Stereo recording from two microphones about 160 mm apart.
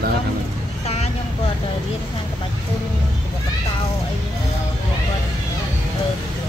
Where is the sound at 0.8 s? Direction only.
40° left (ahead or behind).